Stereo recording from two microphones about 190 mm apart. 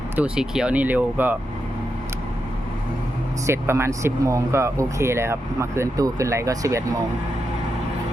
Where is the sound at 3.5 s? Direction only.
15° right (ahead or behind).